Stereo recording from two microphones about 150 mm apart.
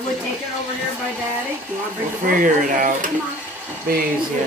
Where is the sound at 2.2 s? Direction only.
60° right (ahead or behind).